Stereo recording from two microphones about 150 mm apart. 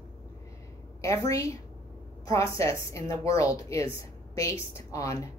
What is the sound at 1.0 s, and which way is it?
A woman's voice, 20° left (ahead or behind).